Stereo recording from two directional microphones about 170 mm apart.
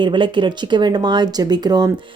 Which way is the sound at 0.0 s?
30° right (ahead or behind).